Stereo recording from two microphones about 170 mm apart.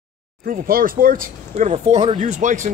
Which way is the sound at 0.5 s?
55° right (ahead or behind).